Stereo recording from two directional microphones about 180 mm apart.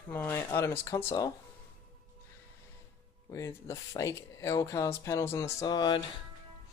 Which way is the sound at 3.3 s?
20° left (ahead or behind).